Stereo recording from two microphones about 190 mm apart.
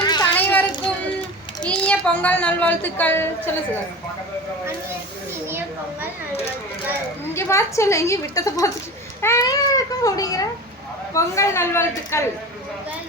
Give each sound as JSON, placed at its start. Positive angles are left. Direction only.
{"t": 0.0, "sound": "children playing", "side_deg": 20}
{"t": 1.6, "sound": "a woman's voice", "side_deg": 5}
{"t": 5.5, "sound": "speech", "side_deg": -10}
{"t": 7.3, "sound": "a woman's voice", "side_deg": 15}